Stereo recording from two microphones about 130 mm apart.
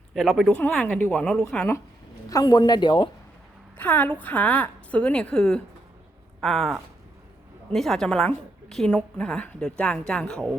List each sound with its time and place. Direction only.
0.1 s speech: centre (ahead or behind)
0.5 s a woman's voice: 10° left (ahead or behind)
2.3 s speech: 30° left (ahead or behind)
3.8 s a woman's voice: 10° left (ahead or behind)